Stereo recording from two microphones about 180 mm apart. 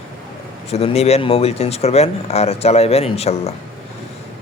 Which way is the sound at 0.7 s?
35° left (ahead or behind).